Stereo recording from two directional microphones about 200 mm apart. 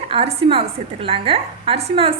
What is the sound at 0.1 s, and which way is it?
A woman's voice, 30° right (ahead or behind).